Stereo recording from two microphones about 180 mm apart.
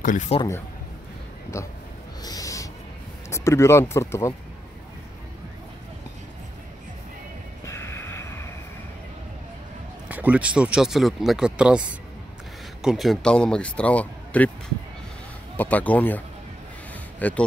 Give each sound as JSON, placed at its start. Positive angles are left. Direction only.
{"t": 0.3, "sound": "a man's voice", "side_deg": 35}
{"t": 1.5, "sound": "speech", "side_deg": 15}
{"t": 2.2, "sound": "owl", "side_deg": 20}
{"t": 3.3, "sound": "speech", "side_deg": 15}
{"t": 7.6, "sound": "music", "side_deg": 15}
{"t": 10.0, "sound": "speech", "side_deg": -10}
{"t": 15.5, "sound": "speech", "side_deg": 10}
{"t": 17.2, "sound": "speech", "side_deg": 10}